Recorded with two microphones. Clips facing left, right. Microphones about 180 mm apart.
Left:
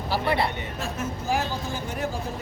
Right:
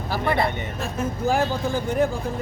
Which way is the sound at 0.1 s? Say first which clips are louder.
Right 2 dB; 50° right (ahead or behind).